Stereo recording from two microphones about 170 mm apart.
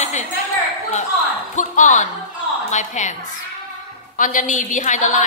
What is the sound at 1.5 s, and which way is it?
A woman's voice, 45° left (ahead or behind).